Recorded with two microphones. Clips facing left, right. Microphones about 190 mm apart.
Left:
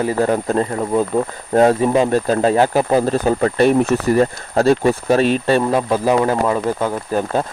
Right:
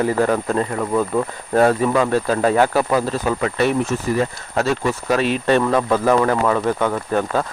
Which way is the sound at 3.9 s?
60° left (ahead or behind).